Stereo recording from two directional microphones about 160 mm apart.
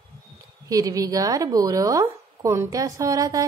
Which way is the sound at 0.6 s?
20° right (ahead or behind).